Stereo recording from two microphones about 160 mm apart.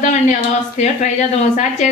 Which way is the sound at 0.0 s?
50° left (ahead or behind).